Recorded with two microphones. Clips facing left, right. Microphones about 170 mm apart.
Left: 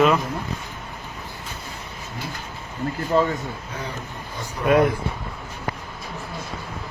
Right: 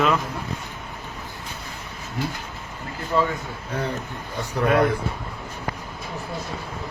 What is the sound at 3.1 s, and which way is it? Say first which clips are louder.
Speech: left 2 dB; 40° left (ahead or behind).